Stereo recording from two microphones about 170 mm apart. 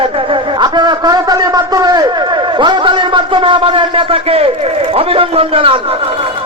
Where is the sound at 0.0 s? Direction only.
30° right (ahead or behind).